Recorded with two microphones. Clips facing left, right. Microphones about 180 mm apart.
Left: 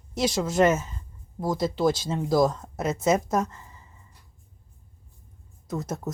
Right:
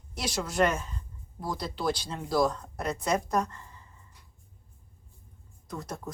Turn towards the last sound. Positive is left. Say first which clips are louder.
# left 7 dB
turn(degrees=20)  # may be behind; listen again after turning